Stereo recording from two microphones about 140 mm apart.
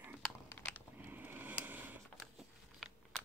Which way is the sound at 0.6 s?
15° left (ahead or behind).